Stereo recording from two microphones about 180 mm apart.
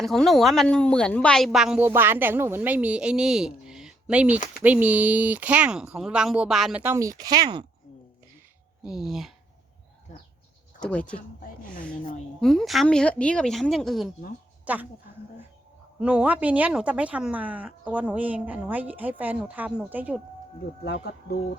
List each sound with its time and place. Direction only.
0.0 s a woman's voice: centre (ahead or behind); by 7.6 s 20° right (ahead or behind)
8.8 s a woman's voice: 5° right (ahead or behind)
10.8 s speech: 5° left (ahead or behind)
12.4 s a woman's voice: centre (ahead or behind)
14.6 s a sound: 10° right (ahead or behind)
16.0 s speech: 5° right (ahead or behind)
20.8 s speech: 65° left (ahead or behind)